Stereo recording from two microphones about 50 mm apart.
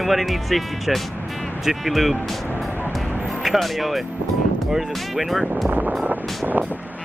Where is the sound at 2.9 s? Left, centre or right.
Centre.